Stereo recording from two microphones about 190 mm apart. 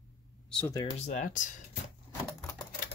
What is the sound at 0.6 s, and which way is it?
Speech, 20° left (ahead or behind).